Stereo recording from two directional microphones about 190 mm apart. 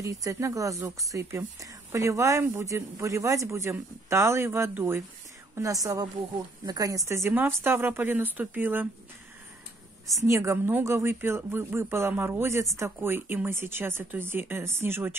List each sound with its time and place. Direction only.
0.0 s speech: 15° right (ahead or behind)
10.2 s speech: 15° right (ahead or behind)